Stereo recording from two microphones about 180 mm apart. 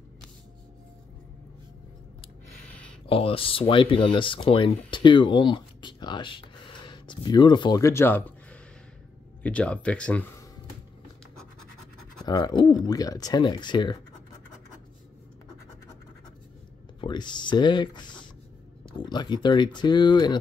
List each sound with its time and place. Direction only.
3.1 s speech: 30° left (ahead or behind); by 10.2 s 5° left (ahead or behind)
12.3 s speech: 20° left (ahead or behind)
17.0 s speech: 25° left (ahead or behind)